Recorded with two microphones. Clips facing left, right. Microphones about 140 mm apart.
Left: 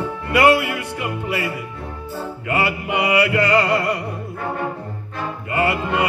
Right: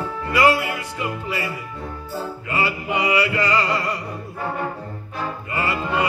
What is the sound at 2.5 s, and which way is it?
Music, 65° left (ahead or behind).